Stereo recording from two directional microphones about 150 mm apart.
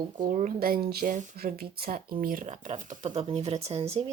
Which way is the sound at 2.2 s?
65° right (ahead or behind).